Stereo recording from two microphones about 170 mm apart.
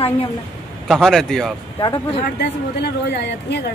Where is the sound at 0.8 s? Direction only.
Centre (ahead or behind).